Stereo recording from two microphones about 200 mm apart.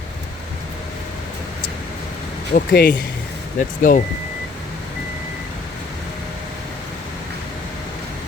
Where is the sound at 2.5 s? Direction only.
50° left (ahead or behind).